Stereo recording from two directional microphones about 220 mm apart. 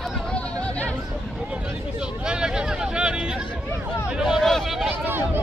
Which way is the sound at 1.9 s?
5° right (ahead or behind).